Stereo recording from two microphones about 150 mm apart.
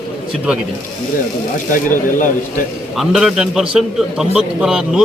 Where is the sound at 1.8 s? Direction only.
65° left (ahead or behind).